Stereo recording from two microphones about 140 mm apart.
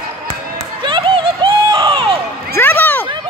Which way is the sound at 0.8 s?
35° right (ahead or behind).